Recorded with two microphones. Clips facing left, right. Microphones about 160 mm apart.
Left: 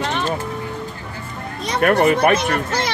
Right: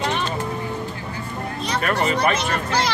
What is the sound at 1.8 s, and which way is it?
Speech, 55° left (ahead or behind).